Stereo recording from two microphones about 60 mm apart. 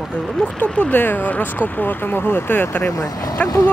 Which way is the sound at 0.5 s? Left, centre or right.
Left.